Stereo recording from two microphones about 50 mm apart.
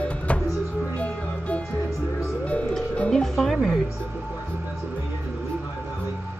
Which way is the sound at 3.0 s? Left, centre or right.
Centre.